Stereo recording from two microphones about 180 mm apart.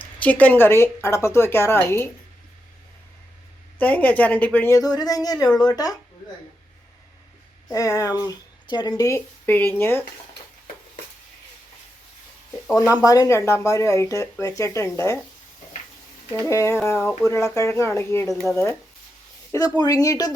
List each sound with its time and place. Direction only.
0.0 s speech: 10° left (ahead or behind)
3.8 s speech: 10° left (ahead or behind)
7.7 s speech: 20° left (ahead or behind)
13.0 s speech: 20° left (ahead or behind)
16.5 s speech: 15° left (ahead or behind)